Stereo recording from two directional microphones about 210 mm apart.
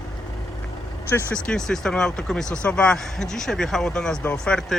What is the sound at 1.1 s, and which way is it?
Speech, 5° left (ahead or behind).